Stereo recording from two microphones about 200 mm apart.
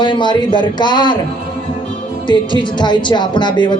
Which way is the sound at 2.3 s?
25° left (ahead or behind).